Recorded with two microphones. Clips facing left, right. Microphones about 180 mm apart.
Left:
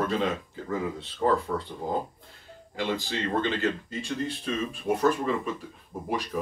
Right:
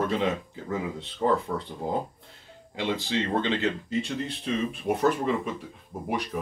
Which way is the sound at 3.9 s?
65° right (ahead or behind).